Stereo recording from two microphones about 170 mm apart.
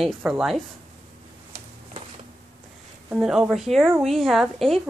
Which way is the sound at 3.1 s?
5° right (ahead or behind).